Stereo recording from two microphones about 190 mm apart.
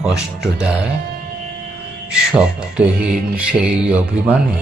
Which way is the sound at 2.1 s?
5° right (ahead or behind).